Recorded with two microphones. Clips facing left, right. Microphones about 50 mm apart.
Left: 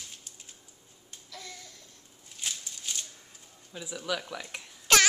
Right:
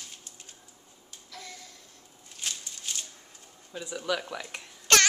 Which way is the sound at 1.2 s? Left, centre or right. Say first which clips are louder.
Right 1 dB; centre.